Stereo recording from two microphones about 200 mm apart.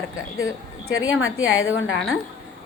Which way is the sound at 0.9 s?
90° left.